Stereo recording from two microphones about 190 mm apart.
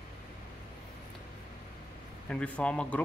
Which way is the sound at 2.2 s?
5° left (ahead or behind).